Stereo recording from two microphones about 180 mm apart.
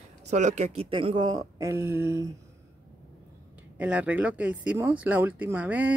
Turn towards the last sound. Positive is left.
turn(degrees=-10)  # may be behind; listen again after turning